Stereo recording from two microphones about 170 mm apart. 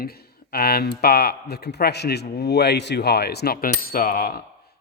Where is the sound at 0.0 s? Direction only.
65° left (ahead or behind).